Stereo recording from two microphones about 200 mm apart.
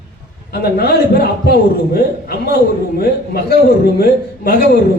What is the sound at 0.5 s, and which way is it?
A man's voice, 50° left (ahead or behind).